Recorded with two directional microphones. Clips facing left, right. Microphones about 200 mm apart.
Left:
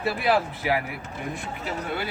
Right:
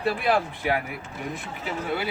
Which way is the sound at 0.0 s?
5° left (ahead or behind).